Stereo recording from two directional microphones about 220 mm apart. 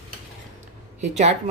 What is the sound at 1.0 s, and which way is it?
Speech, 30° right (ahead or behind).